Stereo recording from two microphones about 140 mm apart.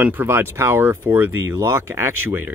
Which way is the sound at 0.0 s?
15° right (ahead or behind).